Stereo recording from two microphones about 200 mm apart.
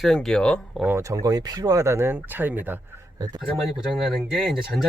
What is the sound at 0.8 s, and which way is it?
Speech, 15° right (ahead or behind).